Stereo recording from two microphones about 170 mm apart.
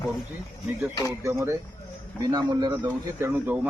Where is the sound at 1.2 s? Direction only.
15° right (ahead or behind).